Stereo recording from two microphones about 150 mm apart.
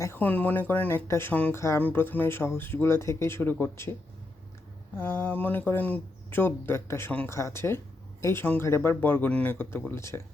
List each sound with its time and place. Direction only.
0.0 s speech: 15° left (ahead or behind)
4.9 s speech: 15° left (ahead or behind)